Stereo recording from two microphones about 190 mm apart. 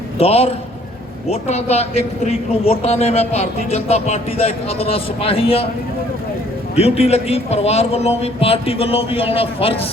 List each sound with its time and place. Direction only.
0.2 s a man's voice: 30° left (ahead or behind)
6.7 s a man's voice: 30° left (ahead or behind)